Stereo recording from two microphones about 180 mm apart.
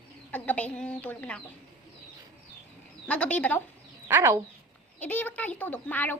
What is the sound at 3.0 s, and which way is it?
Speech, 10° left (ahead or behind).